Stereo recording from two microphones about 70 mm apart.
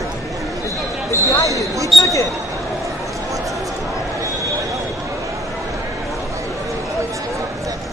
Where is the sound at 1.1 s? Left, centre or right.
Left.